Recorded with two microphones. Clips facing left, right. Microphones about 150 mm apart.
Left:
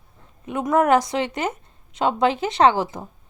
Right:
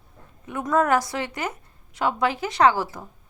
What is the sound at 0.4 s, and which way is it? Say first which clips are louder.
A woman's voice: left 3 dB; 20° left (ahead or behind).